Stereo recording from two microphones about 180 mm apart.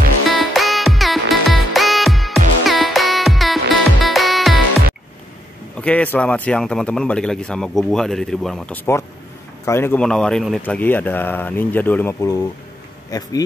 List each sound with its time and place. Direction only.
0.3 s music: centre (ahead or behind)
5.8 s speech: 5° left (ahead or behind)